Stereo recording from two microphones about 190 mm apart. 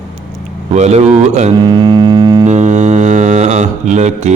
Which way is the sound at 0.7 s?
35° right (ahead or behind).